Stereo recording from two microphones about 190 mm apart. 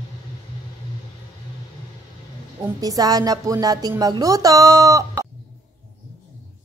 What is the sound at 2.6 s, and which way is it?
Speech, 20° right (ahead or behind).